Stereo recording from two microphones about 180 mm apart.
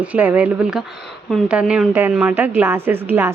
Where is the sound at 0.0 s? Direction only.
10° right (ahead or behind).